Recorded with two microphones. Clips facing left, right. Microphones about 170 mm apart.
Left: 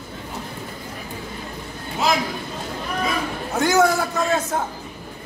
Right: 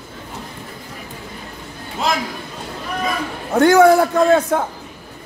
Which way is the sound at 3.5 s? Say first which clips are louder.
Right 8 dB; 55° right (ahead or behind).